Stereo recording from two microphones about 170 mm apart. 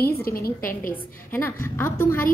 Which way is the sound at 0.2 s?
60° left (ahead or behind).